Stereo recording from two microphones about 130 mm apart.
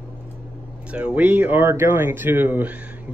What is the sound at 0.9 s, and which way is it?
Speech, 10° right (ahead or behind).